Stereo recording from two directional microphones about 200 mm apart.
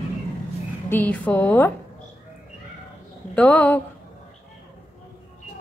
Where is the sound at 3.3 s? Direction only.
5° left (ahead or behind).